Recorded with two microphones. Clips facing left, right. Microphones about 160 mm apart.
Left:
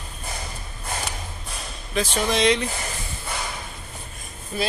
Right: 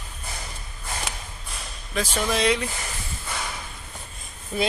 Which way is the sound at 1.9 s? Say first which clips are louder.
Left 2 dB; 5° right (ahead or behind).